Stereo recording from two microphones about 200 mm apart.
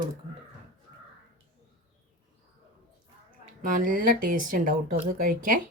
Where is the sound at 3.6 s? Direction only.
40° right (ahead or behind).